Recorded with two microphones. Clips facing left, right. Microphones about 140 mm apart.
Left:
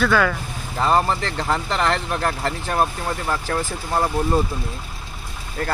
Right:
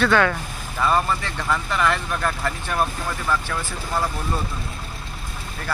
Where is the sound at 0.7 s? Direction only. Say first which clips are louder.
Left 2 dB; 25° left (ahead or behind); by 4.1 s 40° left (ahead or behind).